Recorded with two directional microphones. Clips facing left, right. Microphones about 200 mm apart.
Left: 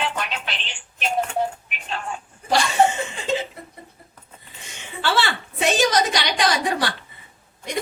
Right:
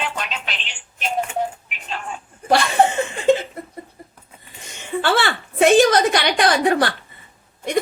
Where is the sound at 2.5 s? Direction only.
55° right (ahead or behind).